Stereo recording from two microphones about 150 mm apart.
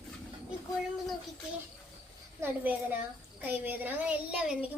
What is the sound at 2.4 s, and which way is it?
A child's voice, 10° right (ahead or behind).